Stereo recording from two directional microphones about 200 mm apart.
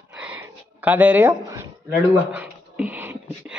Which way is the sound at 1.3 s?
15° right (ahead or behind).